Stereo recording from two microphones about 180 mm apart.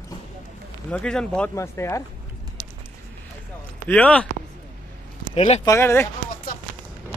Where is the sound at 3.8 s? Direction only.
5° left (ahead or behind).